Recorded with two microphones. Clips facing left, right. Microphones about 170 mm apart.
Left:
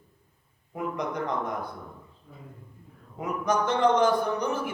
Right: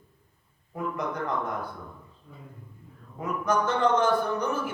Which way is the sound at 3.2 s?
15° left (ahead or behind).